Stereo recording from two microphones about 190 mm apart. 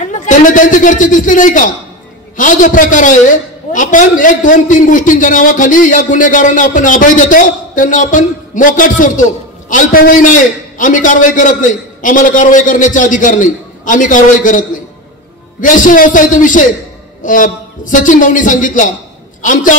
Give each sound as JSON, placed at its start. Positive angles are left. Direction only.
{"t": 0.2, "sound": "a man's voice", "side_deg": 45}
{"t": 15.6, "sound": "a man's voice", "side_deg": 45}